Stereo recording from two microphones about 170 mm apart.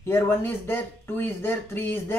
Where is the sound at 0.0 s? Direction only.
15° left (ahead or behind).